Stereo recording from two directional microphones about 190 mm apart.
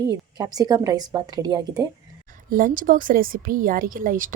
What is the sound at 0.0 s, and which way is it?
Speech, 20° right (ahead or behind).